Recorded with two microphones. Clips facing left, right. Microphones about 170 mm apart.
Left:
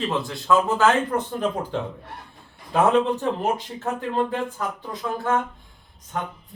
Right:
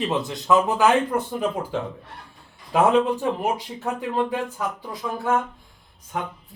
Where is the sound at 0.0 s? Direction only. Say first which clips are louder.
Right 1 dB; 20° right (ahead or behind).